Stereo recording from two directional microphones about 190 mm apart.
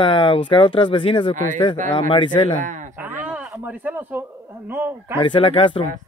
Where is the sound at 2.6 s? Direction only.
40° right (ahead or behind).